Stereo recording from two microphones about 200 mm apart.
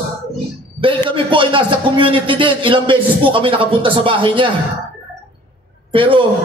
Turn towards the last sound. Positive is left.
turn(degrees=-25)  # may be behind; listen again after turning